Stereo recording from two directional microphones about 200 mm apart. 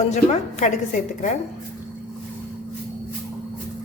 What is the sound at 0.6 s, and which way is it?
Speech, 40° left (ahead or behind).